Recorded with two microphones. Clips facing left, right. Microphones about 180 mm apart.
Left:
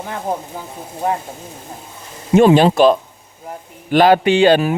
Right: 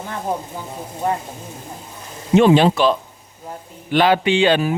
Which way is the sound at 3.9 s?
45° left (ahead or behind).